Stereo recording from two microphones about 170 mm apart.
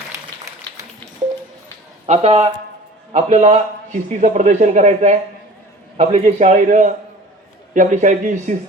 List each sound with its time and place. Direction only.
2.0 s a man's voice: 40° right (ahead or behind)